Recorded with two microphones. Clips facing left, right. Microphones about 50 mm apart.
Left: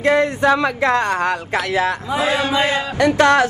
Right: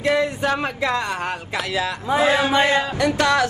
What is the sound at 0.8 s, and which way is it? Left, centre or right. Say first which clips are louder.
Speech: left 6 dB; left.